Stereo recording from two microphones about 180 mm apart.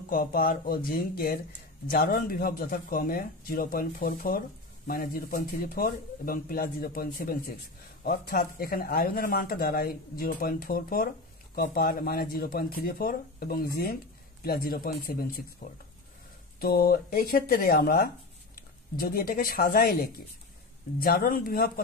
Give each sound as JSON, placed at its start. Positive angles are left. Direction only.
{"t": 0.1, "sound": "speech", "side_deg": 50}